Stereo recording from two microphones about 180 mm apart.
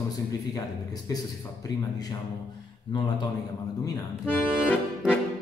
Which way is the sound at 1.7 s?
20° left (ahead or behind).